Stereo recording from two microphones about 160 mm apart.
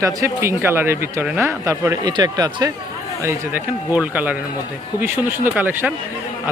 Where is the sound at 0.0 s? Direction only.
20° right (ahead or behind).